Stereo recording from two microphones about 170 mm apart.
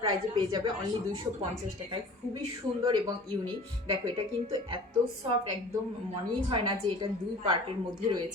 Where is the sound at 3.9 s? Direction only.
30° right (ahead or behind).